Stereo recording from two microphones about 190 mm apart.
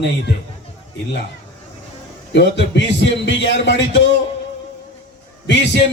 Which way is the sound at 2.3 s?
65° left (ahead or behind).